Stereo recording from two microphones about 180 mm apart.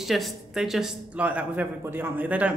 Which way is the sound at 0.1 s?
Centre (ahead or behind).